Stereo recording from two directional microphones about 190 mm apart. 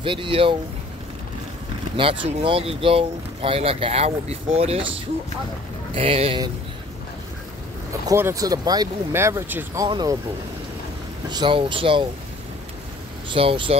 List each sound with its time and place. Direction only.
0.0 s speech: 25° right (ahead or behind)
2.0 s speech: 25° right (ahead or behind)
8.1 s speech: 15° right (ahead or behind)
11.2 s speech: 25° right (ahead or behind)
13.3 s speech: 25° right (ahead or behind)